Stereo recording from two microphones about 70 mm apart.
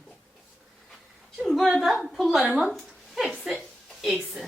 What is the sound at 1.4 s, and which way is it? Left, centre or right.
Speech, centre.